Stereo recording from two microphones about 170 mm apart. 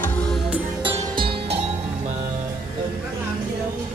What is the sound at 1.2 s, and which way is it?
Music, 35° right (ahead or behind).